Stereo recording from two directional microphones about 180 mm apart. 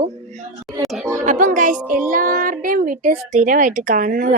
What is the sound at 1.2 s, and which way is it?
Speech, 45° right (ahead or behind).